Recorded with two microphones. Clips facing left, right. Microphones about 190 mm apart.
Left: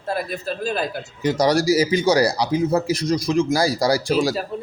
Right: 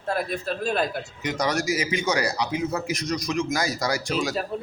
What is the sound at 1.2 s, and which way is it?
A man's voice, 35° left (ahead or behind).